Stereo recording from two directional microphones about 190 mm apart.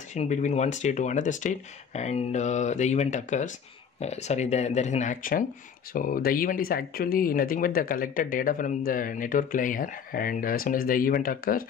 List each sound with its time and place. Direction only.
0.1 s speech: 40° left (ahead or behind)